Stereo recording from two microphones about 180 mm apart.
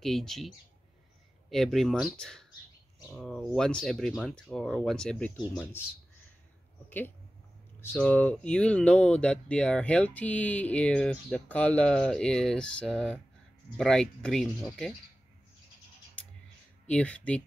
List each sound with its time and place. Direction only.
0.0 s speech: centre (ahead or behind)
7.8 s speech: 10° left (ahead or behind)
16.8 s speech: 5° left (ahead or behind)